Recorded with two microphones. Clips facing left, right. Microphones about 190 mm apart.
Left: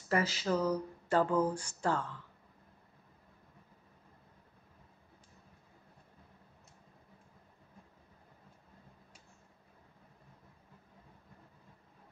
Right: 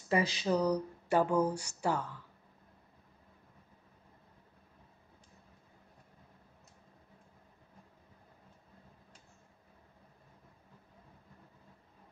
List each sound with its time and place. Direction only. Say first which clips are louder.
0.1 s speech: right 1 dB; 15° right (ahead or behind)
1.5 s a sound: even; 70° right (ahead or behind)
1.8 s speech: even; 10° right (ahead or behind)